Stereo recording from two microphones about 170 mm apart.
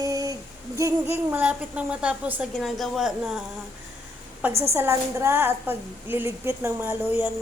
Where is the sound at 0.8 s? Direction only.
15° right (ahead or behind).